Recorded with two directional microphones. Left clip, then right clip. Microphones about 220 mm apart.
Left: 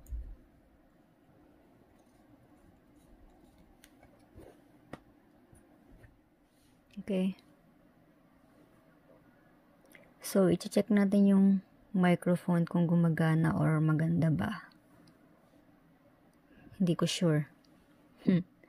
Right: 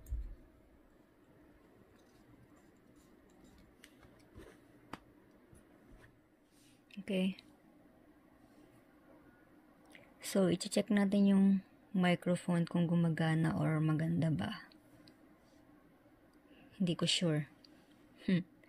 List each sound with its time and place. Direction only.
7.1 s speech: 15° left (ahead or behind)
10.2 s speech: 20° left (ahead or behind)
16.7 s speech: 25° left (ahead or behind)